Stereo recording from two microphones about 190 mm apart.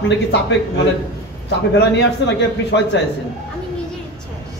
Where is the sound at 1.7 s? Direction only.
65° left (ahead or behind).